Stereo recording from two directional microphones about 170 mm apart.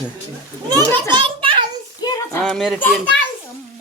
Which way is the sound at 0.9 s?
15° left (ahead or behind).